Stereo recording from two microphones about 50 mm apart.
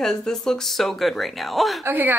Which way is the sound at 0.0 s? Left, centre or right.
Centre.